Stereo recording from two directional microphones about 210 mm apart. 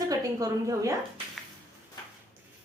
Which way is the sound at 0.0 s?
15° right (ahead or behind).